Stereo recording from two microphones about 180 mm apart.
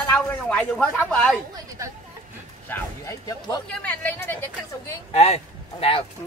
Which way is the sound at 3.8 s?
10° left (ahead or behind).